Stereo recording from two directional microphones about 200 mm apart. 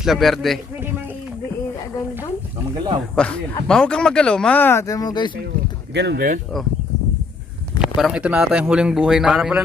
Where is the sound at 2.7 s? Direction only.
20° right (ahead or behind).